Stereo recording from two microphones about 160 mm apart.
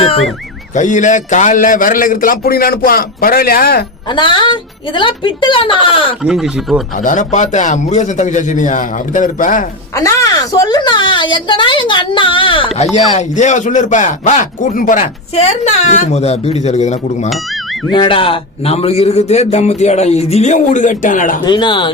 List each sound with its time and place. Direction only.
0.8 s a man's voice: 50° left (ahead or behind); by 3.8 s 70° left (ahead or behind)
4.1 s a woman's voice: 30° left (ahead or behind)
6.2 s speech: centre (ahead or behind)
7.0 s a man's voice: 50° left (ahead or behind)
9.9 s a woman's voice: 20° left (ahead or behind); by 17.0 s 45° left (ahead or behind)
17.9 s a man's voice: 30° left (ahead or behind); by 21.3 s 55° left (ahead or behind)
21.4 s speech: 30° left (ahead or behind)